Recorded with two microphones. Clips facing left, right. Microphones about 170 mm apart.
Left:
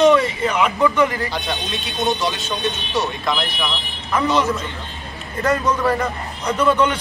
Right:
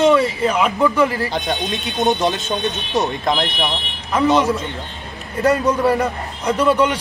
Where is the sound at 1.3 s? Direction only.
20° right (ahead or behind).